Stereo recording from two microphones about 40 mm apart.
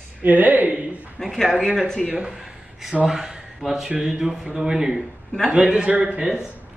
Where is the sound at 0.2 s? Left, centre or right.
Right.